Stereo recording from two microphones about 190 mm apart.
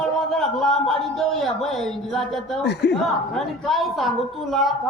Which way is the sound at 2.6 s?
60° left (ahead or behind).